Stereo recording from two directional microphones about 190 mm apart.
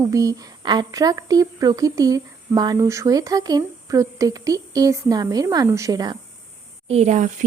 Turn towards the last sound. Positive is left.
turn(degrees=-40)  # may be behind; listen again after turning